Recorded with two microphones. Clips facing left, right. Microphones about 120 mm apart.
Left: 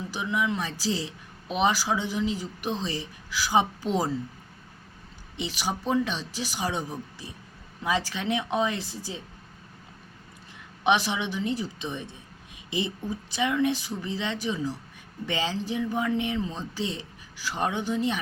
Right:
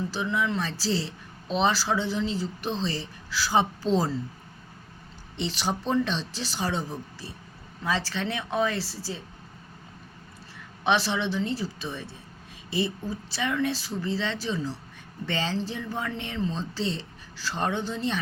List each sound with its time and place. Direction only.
0.1 s speech: 15° left (ahead or behind)
5.4 s speech: 10° left (ahead or behind)
10.8 s speech: 15° left (ahead or behind)